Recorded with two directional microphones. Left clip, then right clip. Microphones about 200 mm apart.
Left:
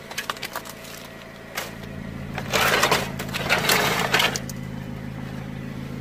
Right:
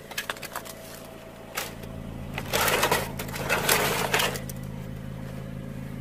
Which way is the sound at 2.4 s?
25° right (ahead or behind).